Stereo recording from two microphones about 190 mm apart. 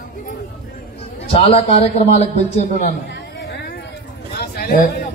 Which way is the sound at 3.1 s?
60° left (ahead or behind).